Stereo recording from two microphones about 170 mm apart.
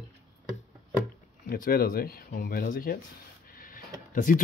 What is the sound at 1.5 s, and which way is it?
Speech, 60° left (ahead or behind).